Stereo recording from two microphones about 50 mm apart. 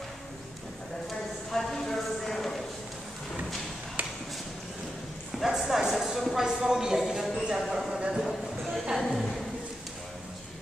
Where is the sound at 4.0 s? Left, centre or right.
Right.